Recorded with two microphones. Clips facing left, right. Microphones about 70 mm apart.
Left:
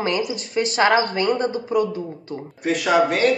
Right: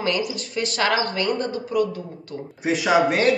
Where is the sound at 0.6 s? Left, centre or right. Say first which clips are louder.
Left 4 dB; left.